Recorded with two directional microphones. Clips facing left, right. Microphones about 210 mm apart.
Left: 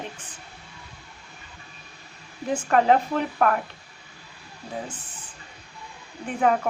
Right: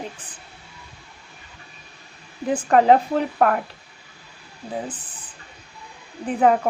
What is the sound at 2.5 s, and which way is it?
Speech, 35° right (ahead or behind).